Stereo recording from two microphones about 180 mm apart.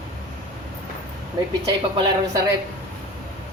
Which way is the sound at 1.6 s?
20° right (ahead or behind).